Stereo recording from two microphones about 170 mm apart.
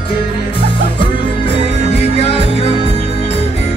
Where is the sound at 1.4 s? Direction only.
35° left (ahead or behind).